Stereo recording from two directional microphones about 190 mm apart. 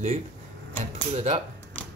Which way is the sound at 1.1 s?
30° right (ahead or behind).